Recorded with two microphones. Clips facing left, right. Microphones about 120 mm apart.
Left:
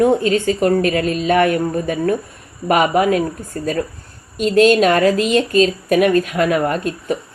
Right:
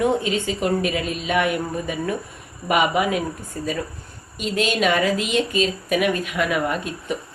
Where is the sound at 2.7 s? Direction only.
45° left (ahead or behind).